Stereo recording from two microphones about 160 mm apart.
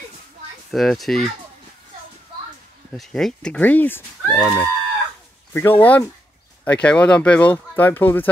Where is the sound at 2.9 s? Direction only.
Centre (ahead or behind).